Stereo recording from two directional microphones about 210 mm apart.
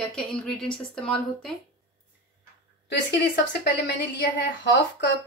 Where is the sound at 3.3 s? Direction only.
55° left (ahead or behind).